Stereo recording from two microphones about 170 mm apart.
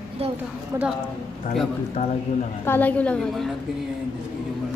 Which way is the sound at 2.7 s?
10° left (ahead or behind).